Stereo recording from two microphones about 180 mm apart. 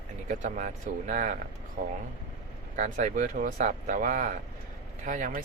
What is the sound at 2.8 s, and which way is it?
Speech, 45° right (ahead or behind).